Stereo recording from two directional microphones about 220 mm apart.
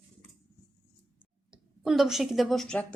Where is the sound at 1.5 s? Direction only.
Centre (ahead or behind).